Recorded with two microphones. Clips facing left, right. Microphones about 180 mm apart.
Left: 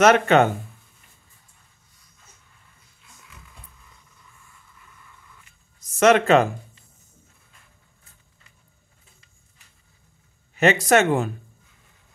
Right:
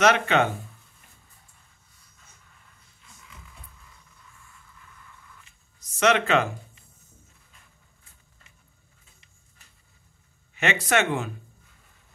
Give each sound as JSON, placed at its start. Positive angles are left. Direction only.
{"t": 0.0, "sound": "speech", "side_deg": 45}
{"t": 5.9, "sound": "speech", "side_deg": 45}
{"t": 10.5, "sound": "speech", "side_deg": 40}